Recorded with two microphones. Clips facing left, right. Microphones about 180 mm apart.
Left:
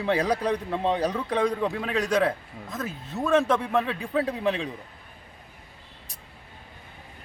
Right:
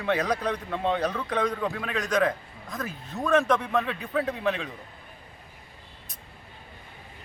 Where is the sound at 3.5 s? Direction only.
5° left (ahead or behind).